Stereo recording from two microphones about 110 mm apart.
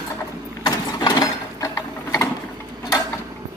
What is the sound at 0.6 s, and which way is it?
Mechanisms, 35° left (ahead or behind).